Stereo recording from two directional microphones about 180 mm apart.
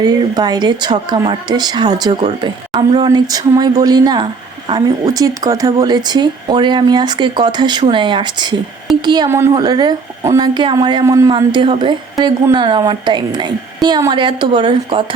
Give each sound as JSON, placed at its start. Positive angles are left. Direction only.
{"t": 0.0, "sound": "a woman's voice", "side_deg": -20}